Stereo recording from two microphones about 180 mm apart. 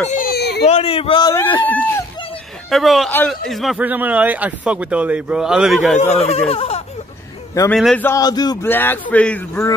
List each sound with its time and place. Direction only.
0.2 s baby cry: 60° left (ahead or behind)
0.7 s speech: 35° left (ahead or behind)
1.7 s speech: 10° left (ahead or behind)
2.7 s a man's voice: centre (ahead or behind)
5.9 s speech: 35° left (ahead or behind)
7.7 s a man's voice: 5° left (ahead or behind)
8.1 s speech: 20° left (ahead or behind)
8.6 s speech: 10° left (ahead or behind)